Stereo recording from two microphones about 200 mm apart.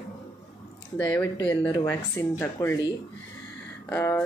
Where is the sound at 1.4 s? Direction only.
15° left (ahead or behind).